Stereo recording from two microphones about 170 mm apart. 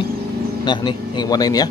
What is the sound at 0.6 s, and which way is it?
Speech, 25° left (ahead or behind).